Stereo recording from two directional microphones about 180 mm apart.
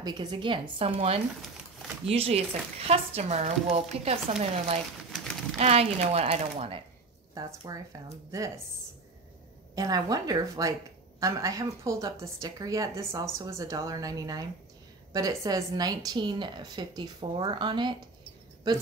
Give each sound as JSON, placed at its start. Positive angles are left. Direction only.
{"t": 0.0, "sound": "a woman's voice", "side_deg": -25}
{"t": 5.1, "sound": "a sound", "side_deg": 0}
{"t": 5.6, "sound": "a woman's voice", "side_deg": -35}
{"t": 7.3, "sound": "a woman's voice", "side_deg": -20}
{"t": 9.8, "sound": "a woman's voice", "side_deg": -20}